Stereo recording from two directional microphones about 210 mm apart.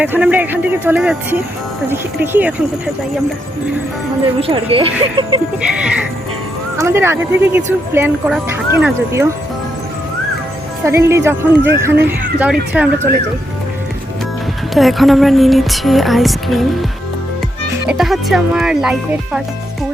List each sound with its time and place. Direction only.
0.0 s speech: 5° right (ahead or behind)
4.4 s speech: 25° right (ahead or behind)
5.6 s music: 5° right (ahead or behind)
6.7 s speech: 10° right (ahead or behind)
10.8 s speech: 15° right (ahead or behind)
12.7 s music: 5° right (ahead or behind)
14.8 s music: centre (ahead or behind)
17.8 s music: centre (ahead or behind)